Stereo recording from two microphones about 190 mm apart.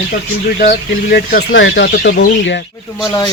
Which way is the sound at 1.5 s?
70° left (ahead or behind).